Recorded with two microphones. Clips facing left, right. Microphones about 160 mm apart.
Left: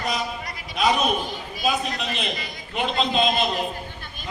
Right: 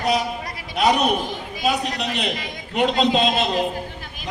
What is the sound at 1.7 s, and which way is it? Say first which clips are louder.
A man's voice: right 2 dB; 75° right (ahead or behind).